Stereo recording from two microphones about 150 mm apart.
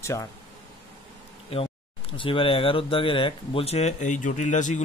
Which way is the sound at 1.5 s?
35° left (ahead or behind).